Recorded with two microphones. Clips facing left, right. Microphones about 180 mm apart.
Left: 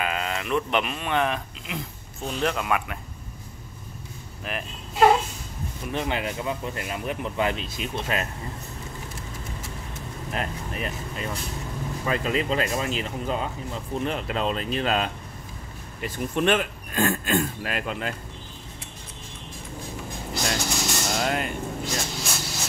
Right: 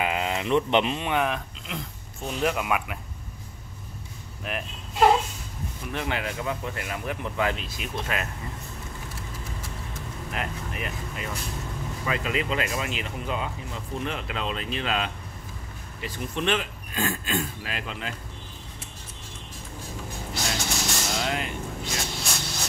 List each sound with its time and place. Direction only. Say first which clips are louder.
0.0 s speech: right 2 dB; 20° right (ahead or behind)
1.1 s speech: left 4 dB; centre (ahead or behind)
4.5 s speech: even; centre (ahead or behind)
5.9 s speech: left 2 dB; 20° left (ahead or behind)
10.3 s speech: left 2 dB; 35° left (ahead or behind); by 18.1 s 50° left (ahead or behind)
20.7 s vehicle: left 2 dB; centre (ahead or behind)
21.3 s vehicle: left 3 dB; 45° left (ahead or behind)
21.8 s a sound: left 2 dB; centre (ahead or behind)